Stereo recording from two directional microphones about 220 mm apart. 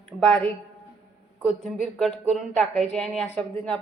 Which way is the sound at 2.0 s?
Centre (ahead or behind).